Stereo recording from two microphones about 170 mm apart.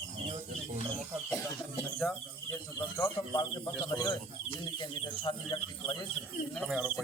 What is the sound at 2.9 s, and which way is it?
Speech, 25° left (ahead or behind).